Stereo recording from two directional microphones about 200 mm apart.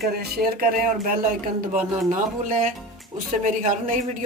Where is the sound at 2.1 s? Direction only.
40° right (ahead or behind).